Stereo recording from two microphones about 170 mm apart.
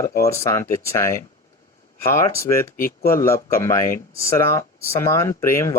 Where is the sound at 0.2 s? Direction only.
15° left (ahead or behind).